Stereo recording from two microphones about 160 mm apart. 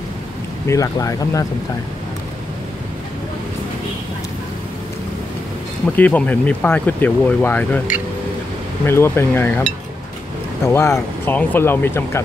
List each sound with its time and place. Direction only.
0.7 s speech: 20° left (ahead or behind)
5.9 s speech: 10° left (ahead or behind)
8.8 s speech: 15° left (ahead or behind)